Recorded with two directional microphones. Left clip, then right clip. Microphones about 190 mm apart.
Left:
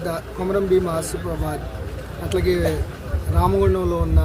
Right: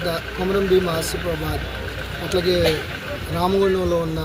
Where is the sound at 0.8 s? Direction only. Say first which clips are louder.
Right 1 dB; 10° left (ahead or behind).